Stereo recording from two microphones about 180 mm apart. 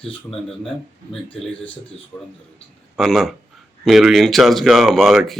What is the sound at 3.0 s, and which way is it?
Speech, centre (ahead or behind).